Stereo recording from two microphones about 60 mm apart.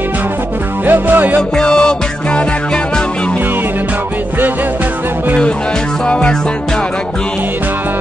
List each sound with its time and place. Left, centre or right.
0.8 s music: right
1.6 s music: centre
6.0 s music: centre